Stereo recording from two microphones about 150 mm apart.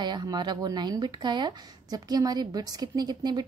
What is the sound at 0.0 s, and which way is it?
Speech, 30° right (ahead or behind).